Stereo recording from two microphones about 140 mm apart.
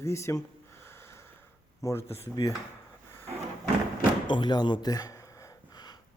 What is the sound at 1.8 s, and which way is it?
Speech, 25° left (ahead or behind).